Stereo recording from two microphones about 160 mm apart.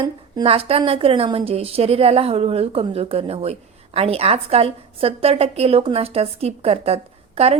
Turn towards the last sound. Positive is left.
turn(degrees=-40)  # may be behind; listen again after turning